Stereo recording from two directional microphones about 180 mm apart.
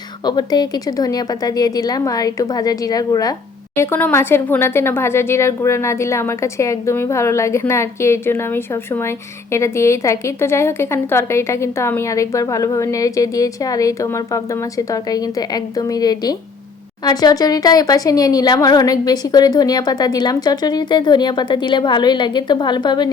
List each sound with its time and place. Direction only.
0.3 s speech: 25° left (ahead or behind)